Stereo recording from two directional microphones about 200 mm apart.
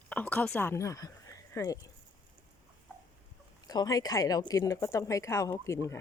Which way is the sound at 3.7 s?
20° left (ahead or behind).